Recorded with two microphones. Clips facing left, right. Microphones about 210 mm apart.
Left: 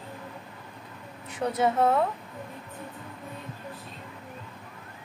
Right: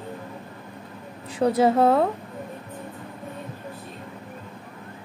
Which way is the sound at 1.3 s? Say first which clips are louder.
Right 7 dB; 35° right (ahead or behind).